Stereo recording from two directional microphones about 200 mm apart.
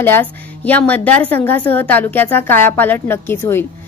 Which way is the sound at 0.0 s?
10° left (ahead or behind).